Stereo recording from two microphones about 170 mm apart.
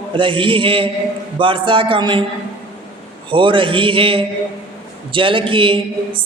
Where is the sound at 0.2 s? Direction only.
30° right (ahead or behind).